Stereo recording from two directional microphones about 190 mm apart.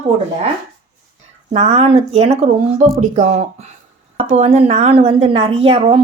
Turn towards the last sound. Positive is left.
turn(degrees=-35)  # may be behind; listen again after turning